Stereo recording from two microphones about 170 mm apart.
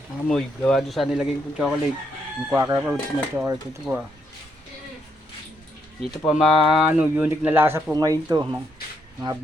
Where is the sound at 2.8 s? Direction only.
5° right (ahead or behind).